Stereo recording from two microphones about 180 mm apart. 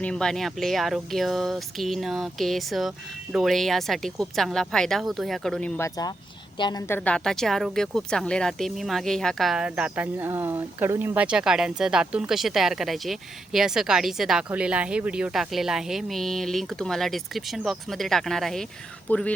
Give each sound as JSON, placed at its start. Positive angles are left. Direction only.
{"t": 0.0, "sound": "speech", "side_deg": 5}
{"t": 6.6, "sound": "a woman's voice", "side_deg": 25}
{"t": 6.8, "sound": "speech", "side_deg": 10}